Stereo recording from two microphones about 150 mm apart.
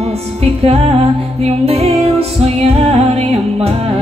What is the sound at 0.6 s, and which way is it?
Music, 40° right (ahead or behind).